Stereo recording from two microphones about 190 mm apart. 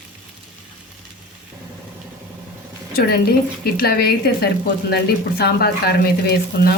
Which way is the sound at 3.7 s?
55° left (ahead or behind).